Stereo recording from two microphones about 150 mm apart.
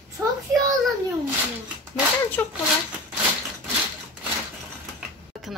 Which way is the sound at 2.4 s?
15° left (ahead or behind).